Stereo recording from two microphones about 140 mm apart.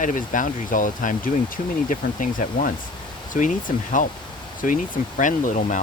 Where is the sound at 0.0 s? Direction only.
70° left (ahead or behind).